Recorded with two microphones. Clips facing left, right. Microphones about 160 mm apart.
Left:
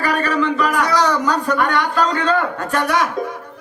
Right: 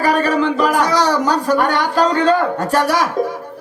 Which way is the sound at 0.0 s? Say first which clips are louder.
Right 3 dB; 35° right (ahead or behind).